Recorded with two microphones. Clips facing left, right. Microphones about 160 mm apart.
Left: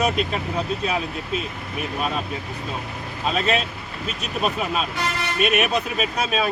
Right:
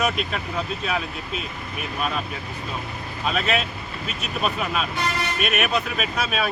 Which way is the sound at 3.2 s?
30° left (ahead or behind).